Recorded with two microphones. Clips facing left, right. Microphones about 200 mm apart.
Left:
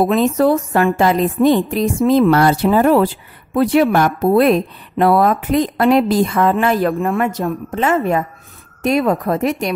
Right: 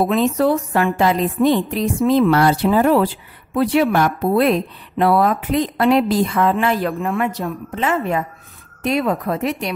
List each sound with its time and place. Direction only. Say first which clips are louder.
0.1 s speech: left 3 dB; 45° left (ahead or behind)